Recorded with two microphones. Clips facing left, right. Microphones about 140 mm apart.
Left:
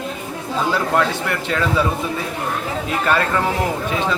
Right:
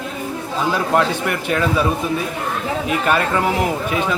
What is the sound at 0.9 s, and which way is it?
Speech, 15° right (ahead or behind).